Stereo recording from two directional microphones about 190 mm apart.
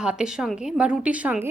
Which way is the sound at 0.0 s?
5° right (ahead or behind).